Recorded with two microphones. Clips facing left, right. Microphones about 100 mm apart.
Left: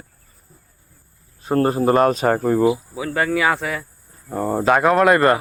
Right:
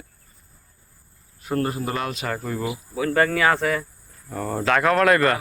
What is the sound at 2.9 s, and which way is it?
Speech, 10° left (ahead or behind).